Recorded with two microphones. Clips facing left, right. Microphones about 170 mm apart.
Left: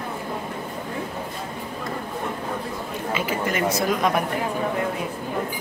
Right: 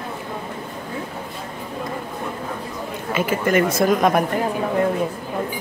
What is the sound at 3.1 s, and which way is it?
Speech, 50° right (ahead or behind).